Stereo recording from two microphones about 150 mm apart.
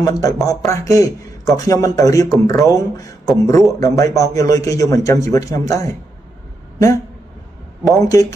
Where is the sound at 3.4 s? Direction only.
20° left (ahead or behind).